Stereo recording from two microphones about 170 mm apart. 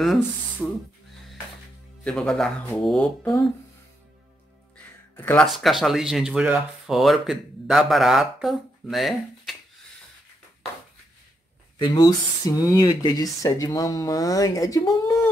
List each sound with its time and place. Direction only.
0.0 s speech: centre (ahead or behind)
2.0 s speech: 5° left (ahead or behind)
4.7 s speech: 10° left (ahead or behind)
11.8 s speech: 25° left (ahead or behind)